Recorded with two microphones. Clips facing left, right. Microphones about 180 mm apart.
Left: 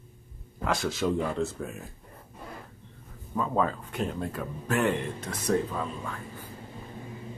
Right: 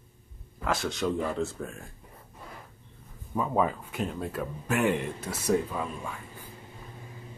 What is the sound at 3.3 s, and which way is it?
Speech, 10° right (ahead or behind).